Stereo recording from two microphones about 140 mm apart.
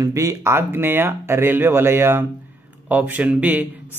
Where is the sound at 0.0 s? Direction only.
25° right (ahead or behind).